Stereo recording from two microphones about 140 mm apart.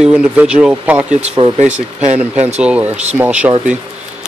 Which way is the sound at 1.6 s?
55° right (ahead or behind).